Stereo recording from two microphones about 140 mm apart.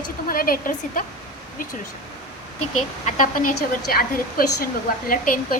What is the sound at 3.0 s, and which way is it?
A woman's voice, 70° left (ahead or behind).